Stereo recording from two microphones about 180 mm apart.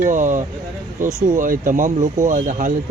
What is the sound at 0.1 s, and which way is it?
Speech, 45° right (ahead or behind).